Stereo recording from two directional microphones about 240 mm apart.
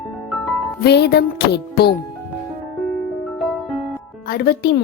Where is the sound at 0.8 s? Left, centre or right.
Left.